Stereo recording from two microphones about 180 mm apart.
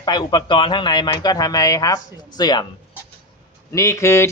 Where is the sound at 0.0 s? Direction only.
25° left (ahead or behind).